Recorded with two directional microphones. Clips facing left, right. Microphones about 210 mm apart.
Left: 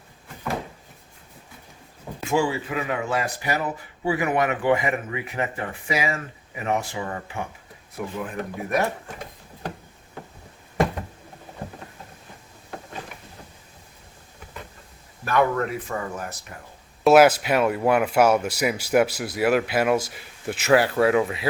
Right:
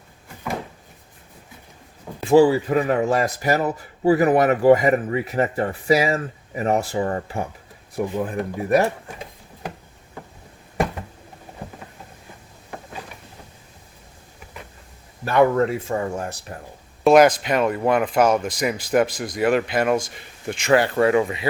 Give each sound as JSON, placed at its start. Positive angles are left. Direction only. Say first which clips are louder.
{"t": 2.2, "sound": "speech", "louder": "right 9 dB", "side_deg": -35}
{"t": 15.2, "sound": "speech", "louder": "right 5 dB", "side_deg": -25}
{"t": 17.0, "sound": "speech", "louder": "right 1 dB", "side_deg": 5}